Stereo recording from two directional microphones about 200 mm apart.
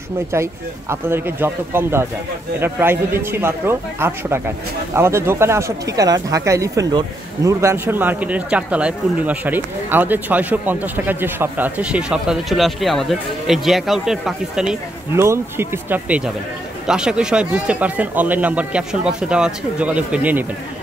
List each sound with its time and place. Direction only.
0.3 s speech: 15° right (ahead or behind)